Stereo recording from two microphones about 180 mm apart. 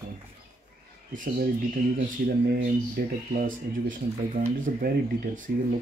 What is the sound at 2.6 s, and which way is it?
Speech, 50° right (ahead or behind).